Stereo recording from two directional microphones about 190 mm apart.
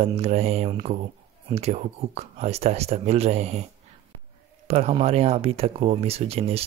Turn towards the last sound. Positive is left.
turn(degrees=-30)  # may be behind; listen again after turning